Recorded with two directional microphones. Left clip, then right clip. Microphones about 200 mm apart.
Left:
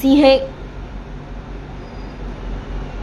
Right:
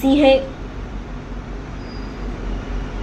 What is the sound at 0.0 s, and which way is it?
Speech, 20° left (ahead or behind).